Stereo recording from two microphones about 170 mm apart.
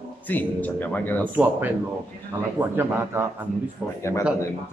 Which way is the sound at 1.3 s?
10° right (ahead or behind).